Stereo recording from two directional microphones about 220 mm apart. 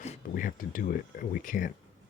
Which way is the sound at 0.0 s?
35° left (ahead or behind).